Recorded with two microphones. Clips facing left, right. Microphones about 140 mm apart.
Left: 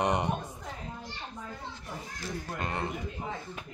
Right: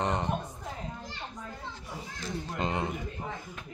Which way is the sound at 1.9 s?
20° right (ahead or behind).